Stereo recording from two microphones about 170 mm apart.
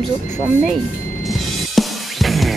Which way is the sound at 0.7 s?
Centre (ahead or behind).